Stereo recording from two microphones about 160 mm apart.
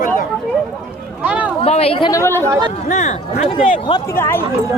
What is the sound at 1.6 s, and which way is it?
Speech, 40° left (ahead or behind).